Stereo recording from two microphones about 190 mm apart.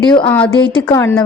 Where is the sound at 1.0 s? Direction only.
10° left (ahead or behind).